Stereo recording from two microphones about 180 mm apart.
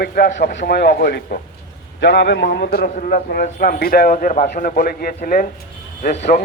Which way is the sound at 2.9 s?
50° left (ahead or behind).